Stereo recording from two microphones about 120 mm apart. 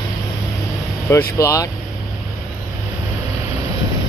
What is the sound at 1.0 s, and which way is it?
Speech, 25° left (ahead or behind).